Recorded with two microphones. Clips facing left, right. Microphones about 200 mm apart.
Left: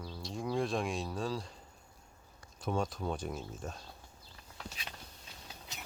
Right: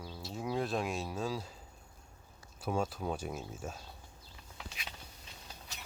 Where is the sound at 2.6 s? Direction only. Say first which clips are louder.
Even; 5° right (ahead or behind).